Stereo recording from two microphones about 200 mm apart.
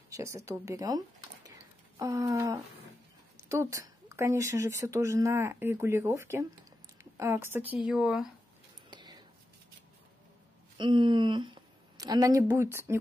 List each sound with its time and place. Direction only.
0.1 s speech: 15° right (ahead or behind)
8.9 s a sound: 20° right (ahead or behind)
10.8 s a woman's voice: 25° right (ahead or behind)